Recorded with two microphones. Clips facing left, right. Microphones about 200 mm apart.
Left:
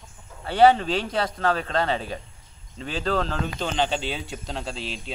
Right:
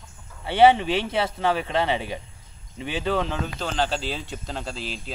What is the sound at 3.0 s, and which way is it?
A man's voice, 5° right (ahead or behind).